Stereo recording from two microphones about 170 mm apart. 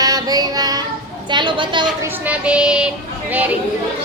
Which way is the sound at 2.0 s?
10° right (ahead or behind).